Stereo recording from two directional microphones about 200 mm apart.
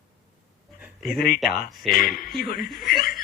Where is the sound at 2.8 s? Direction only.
50° left (ahead or behind).